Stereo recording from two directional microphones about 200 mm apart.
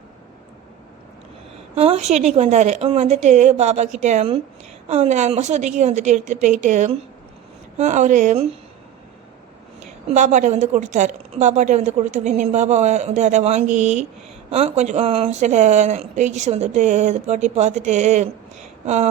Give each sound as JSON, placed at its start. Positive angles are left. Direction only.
{"t": 1.7, "sound": "a woman's voice", "side_deg": -30}
{"t": 10.2, "sound": "a woman's voice", "side_deg": -35}